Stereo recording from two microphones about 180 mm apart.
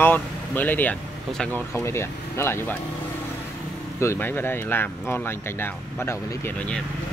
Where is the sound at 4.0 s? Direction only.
15° left (ahead or behind).